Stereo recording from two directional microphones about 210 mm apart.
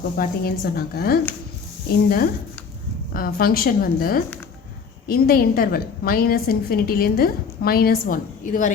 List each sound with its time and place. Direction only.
0.2 s a woman's voice: 45° left (ahead or behind)